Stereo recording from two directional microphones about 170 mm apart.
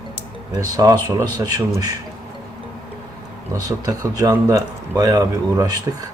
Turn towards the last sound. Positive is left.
turn(degrees=-20)  # may be behind; listen again after turning